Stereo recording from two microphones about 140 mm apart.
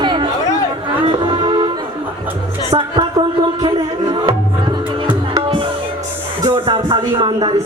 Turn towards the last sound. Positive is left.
turn(degrees=-30)  # may be behind; listen again after turning